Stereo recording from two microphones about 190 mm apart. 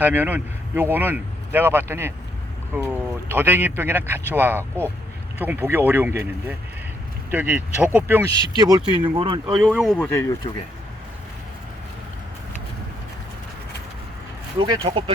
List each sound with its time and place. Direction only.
0.0 s speech: 10° right (ahead or behind)
9.0 s speech: 25° right (ahead or behind)
9.7 s speech: centre (ahead or behind)
10.1 s speech: 15° left (ahead or behind)
14.6 s speech: 25° right (ahead or behind)